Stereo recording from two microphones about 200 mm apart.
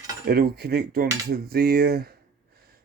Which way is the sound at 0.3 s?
50° right (ahead or behind).